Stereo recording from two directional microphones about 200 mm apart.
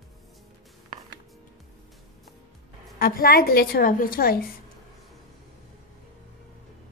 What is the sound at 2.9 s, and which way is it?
A woman's voice, 45° left (ahead or behind).